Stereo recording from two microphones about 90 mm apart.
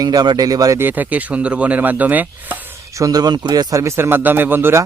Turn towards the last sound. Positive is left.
turn(degrees=-25)  # may be behind; listen again after turning